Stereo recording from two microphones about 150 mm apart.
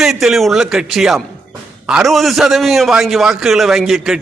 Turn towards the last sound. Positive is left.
turn(degrees=0)  # may be behind; listen again after turning